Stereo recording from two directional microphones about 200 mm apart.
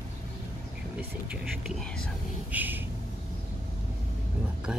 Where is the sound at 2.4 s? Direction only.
10° right (ahead or behind).